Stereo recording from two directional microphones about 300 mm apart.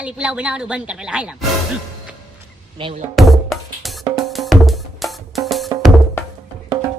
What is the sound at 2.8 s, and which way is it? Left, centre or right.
Speech, centre.